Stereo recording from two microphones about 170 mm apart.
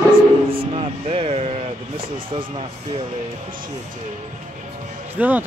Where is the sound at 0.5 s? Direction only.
35° right (ahead or behind).